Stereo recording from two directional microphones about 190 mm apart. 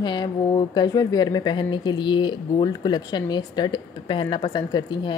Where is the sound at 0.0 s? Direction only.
25° left (ahead or behind).